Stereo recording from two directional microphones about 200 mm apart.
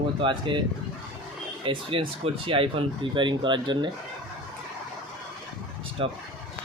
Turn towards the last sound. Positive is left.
turn(degrees=-25)  # may be behind; listen again after turning